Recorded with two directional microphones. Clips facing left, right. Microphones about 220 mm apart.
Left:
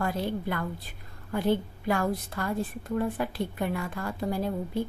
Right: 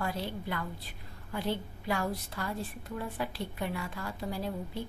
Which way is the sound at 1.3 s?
50° left (ahead or behind).